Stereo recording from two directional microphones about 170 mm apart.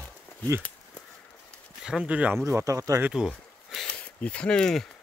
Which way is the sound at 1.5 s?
5° right (ahead or behind).